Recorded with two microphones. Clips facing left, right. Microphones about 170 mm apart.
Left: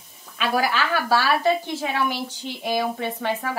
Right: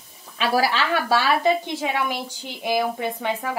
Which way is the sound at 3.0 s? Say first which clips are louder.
Even; 10° right (ahead or behind).